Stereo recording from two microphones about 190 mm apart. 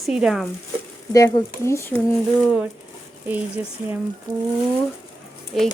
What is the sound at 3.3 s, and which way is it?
Speech, 10° right (ahead or behind).